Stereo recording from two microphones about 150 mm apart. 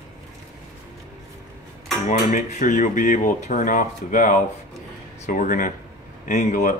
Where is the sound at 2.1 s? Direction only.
55° left (ahead or behind).